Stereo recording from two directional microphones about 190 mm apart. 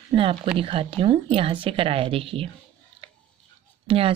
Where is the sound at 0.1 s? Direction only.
30° right (ahead or behind).